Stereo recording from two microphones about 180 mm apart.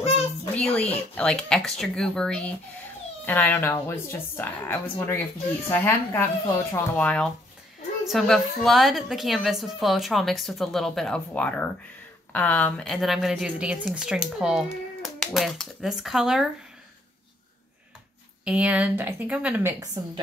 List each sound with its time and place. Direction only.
0.6 s a woman's voice: 5° left (ahead or behind)
18.4 s speech: 5° right (ahead or behind)